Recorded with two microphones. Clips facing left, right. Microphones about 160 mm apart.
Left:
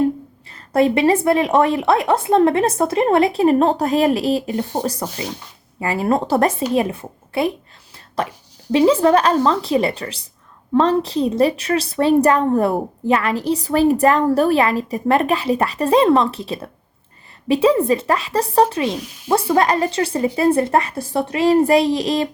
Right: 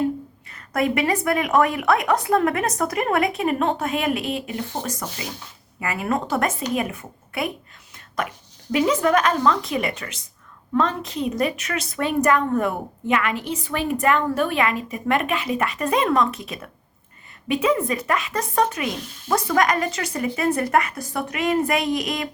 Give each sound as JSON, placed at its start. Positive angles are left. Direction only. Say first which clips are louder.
{"t": 0.5, "sound": "a woman's voice", "louder": "left 6 dB", "side_deg": 30}
{"t": 7.9, "sound": "a sound", "louder": "left 4 dB", "side_deg": 30}
{"t": 8.7, "sound": "a woman's voice", "louder": "left 6 dB", "side_deg": 30}
{"t": 18.9, "sound": "speech", "louder": "left 5 dB", "side_deg": 5}
{"t": 19.3, "sound": "a woman's voice", "louder": "left 4 dB", "side_deg": 30}